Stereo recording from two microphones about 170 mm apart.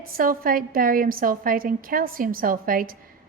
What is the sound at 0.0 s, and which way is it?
A woman's voice, 55° right (ahead or behind).